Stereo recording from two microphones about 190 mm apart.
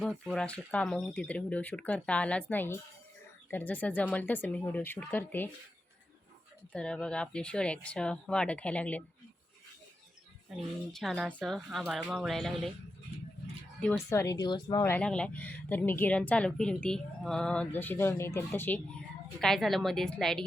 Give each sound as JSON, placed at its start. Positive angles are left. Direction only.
{"t": 0.0, "sound": "speech", "side_deg": 0}
{"t": 6.7, "sound": "speech", "side_deg": 5}
{"t": 10.9, "sound": "speech", "side_deg": 0}
{"t": 13.7, "sound": "speech", "side_deg": 5}
{"t": 14.1, "sound": "speech", "side_deg": 15}
{"t": 14.8, "sound": "speech", "side_deg": 10}